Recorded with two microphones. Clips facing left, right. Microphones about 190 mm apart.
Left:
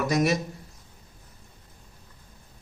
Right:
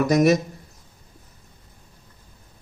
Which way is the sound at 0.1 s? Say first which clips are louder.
Right 7 dB; 45° right (ahead or behind).